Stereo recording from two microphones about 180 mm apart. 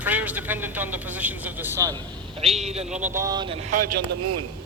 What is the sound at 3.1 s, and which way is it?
Speech, 20° right (ahead or behind).